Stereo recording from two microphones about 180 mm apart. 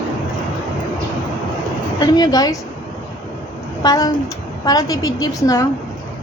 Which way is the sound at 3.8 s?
20° left (ahead or behind).